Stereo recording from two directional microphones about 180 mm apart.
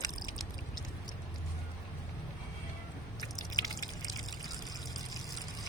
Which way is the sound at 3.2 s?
20° left (ahead or behind).